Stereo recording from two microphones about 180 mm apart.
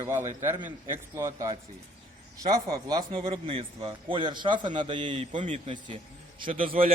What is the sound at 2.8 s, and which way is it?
A man's voice, 25° right (ahead or behind).